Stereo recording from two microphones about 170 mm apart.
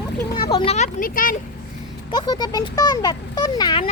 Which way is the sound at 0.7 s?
50° left (ahead or behind).